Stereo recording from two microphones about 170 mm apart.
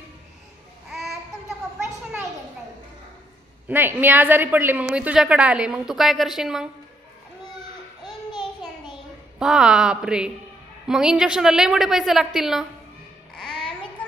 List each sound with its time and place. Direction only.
0.8 s babbling: centre (ahead or behind)
3.6 s a woman's voice: 10° right (ahead or behind)
8.3 s a sound: 25° left (ahead or behind)
9.4 s a woman's voice: centre (ahead or behind)
13.3 s babbling: 5° left (ahead or behind)